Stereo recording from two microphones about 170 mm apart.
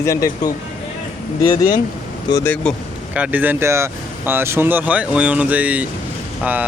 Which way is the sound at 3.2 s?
10° right (ahead or behind).